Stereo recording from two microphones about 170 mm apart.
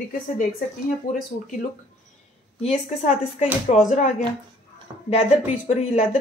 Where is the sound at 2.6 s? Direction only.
40° left (ahead or behind).